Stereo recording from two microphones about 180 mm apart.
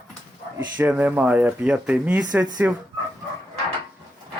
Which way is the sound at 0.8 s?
10° right (ahead or behind).